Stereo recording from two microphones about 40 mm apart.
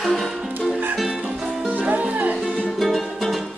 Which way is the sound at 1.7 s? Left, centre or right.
Right.